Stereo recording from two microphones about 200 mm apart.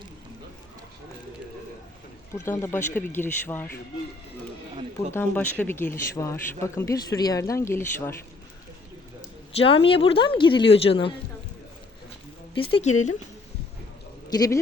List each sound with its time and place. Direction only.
2.3 s speech: 15° left (ahead or behind)
5.1 s speech: 10° left (ahead or behind)
9.6 s speech: 25° left (ahead or behind)
12.7 s speech: 35° left (ahead or behind)
14.3 s speech: 20° left (ahead or behind)